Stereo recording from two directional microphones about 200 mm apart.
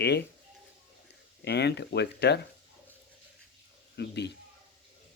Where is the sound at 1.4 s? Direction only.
55° left (ahead or behind).